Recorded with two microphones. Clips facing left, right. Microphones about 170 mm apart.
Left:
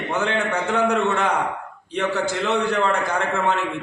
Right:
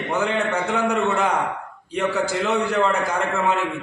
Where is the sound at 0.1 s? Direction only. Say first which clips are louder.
Right 1 dB; 5° right (ahead or behind).